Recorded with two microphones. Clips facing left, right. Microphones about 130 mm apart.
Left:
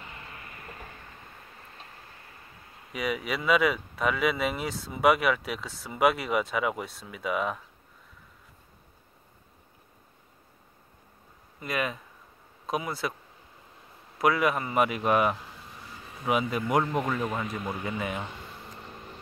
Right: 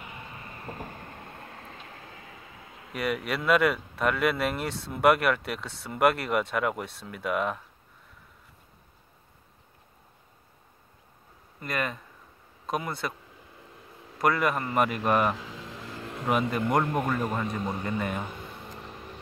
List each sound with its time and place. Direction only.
0.7 s train: 40° right (ahead or behind)
1.5 s vehicle: 90° right
2.3 s a sound: 90° right
2.9 s speech: centre (ahead or behind)
11.6 s speech: 5° left (ahead or behind)
14.1 s speech: centre (ahead or behind)
15.3 s vehicle: 90° right
16.3 s speech: centre (ahead or behind)